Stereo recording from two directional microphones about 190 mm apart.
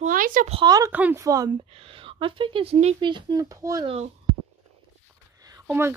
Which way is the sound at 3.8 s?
35° right (ahead or behind).